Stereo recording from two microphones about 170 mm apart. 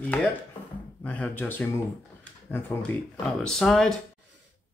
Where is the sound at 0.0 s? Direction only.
5° left (ahead or behind).